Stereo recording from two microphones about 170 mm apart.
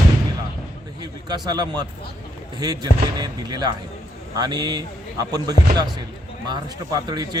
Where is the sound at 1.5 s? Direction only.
25° right (ahead or behind).